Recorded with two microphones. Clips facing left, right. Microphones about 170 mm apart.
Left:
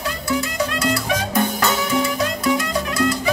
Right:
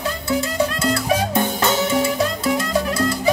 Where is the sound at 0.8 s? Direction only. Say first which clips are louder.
Right 2 dB; 25° right (ahead or behind).